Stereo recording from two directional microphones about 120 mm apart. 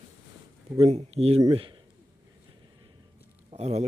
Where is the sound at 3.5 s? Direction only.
60° right (ahead or behind).